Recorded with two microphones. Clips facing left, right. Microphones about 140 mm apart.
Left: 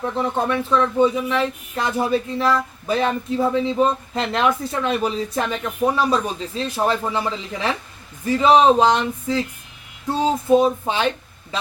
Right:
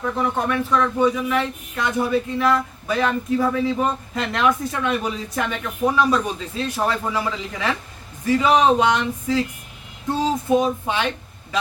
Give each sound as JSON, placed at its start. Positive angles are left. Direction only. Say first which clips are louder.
{"t": 0.0, "sound": "speech", "louder": "left 1 dB", "side_deg": 30}